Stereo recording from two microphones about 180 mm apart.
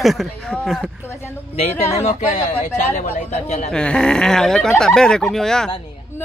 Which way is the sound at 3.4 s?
40° left (ahead or behind).